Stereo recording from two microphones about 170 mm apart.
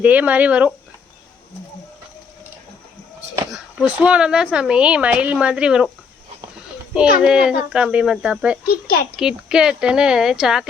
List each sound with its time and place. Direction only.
0.0 s speech: 10° right (ahead or behind)
3.5 s speech: 5° right (ahead or behind)
7.2 s speech: 5° right (ahead or behind)
8.6 s a child's voice: 60° left (ahead or behind)
9.1 s speech: 5° right (ahead or behind)